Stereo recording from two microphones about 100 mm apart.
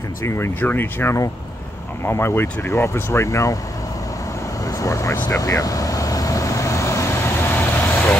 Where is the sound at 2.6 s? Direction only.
25° left (ahead or behind).